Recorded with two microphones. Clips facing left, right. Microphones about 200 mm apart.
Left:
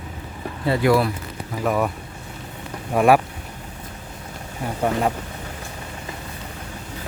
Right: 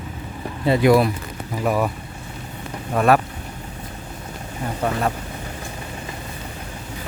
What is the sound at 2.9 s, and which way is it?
Speech, 10° left (ahead or behind).